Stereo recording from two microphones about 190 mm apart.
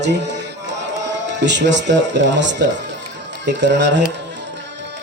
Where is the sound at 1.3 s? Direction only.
65° right (ahead or behind).